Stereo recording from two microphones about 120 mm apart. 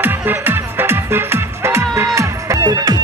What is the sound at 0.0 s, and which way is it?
Music, 15° right (ahead or behind).